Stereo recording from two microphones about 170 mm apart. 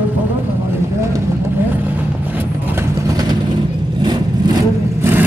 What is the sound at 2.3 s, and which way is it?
Vehicle, 15° right (ahead or behind).